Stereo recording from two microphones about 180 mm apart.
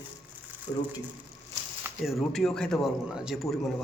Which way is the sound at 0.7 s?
35° left (ahead or behind).